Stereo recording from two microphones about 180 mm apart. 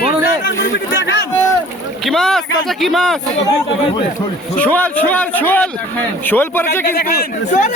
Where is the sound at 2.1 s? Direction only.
Centre (ahead or behind).